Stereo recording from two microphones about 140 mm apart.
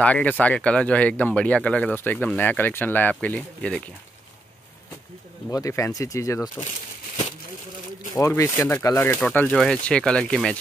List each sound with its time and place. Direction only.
0.0 s speech: 10° left (ahead or behind)
5.5 s speech: 20° left (ahead or behind)
8.1 s speech: 20° left (ahead or behind)
9.2 s speech: 10° left (ahead or behind)